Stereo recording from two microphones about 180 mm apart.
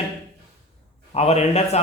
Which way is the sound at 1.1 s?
35° left (ahead or behind).